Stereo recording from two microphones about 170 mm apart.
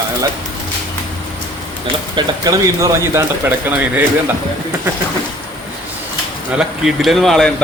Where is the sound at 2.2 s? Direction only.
20° right (ahead or behind).